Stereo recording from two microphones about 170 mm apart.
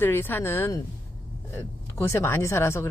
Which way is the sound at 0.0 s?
10° left (ahead or behind).